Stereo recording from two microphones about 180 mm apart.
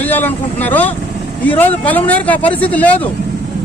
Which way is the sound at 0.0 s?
10° left (ahead or behind).